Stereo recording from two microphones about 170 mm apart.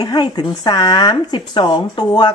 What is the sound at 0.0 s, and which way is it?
Speech, 25° left (ahead or behind).